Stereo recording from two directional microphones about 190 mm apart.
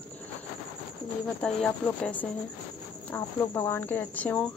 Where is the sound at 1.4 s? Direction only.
5° left (ahead or behind).